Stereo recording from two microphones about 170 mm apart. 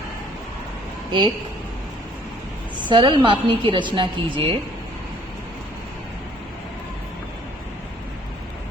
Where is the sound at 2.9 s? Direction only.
30° right (ahead or behind).